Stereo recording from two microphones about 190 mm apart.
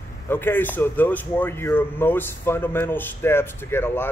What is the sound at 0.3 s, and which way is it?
Speech, 10° left (ahead or behind).